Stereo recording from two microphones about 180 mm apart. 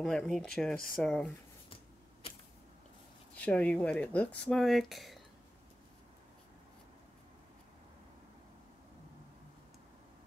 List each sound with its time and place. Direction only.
0.0 s speech: centre (ahead or behind)
3.3 s speech: 5° left (ahead or behind)